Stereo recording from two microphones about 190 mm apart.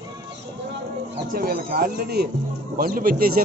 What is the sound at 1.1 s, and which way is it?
Speech, 50° right (ahead or behind).